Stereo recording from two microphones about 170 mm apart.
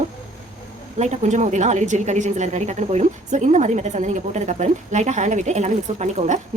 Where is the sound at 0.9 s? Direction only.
45° right (ahead or behind).